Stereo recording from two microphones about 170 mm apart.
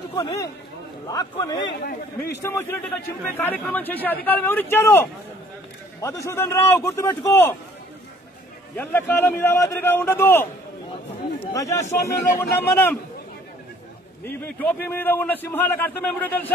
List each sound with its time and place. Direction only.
0.1 s a man's voice: 20° left (ahead or behind)
1.8 s a man's voice: 65° left (ahead or behind)
2.4 s a man's voice: 15° left (ahead or behind)
8.7 s a man's voice: 10° left (ahead or behind)
11.5 s a man's voice: 20° left (ahead or behind)
14.2 s a man's voice: 10° left (ahead or behind)